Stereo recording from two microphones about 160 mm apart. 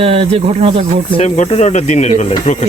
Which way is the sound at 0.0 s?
35° right (ahead or behind).